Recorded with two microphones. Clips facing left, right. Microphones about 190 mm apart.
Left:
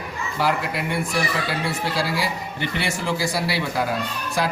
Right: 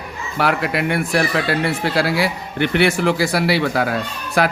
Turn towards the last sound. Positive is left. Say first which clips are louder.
# right 5 dB
turn(degrees=-70)  # may be behind; listen again after turning